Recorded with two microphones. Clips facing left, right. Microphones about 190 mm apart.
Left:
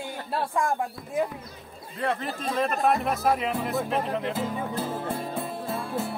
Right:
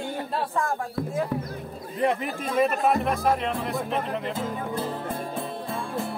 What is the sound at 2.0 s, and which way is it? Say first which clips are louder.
Speech: right 4 dB; 15° right (ahead or behind).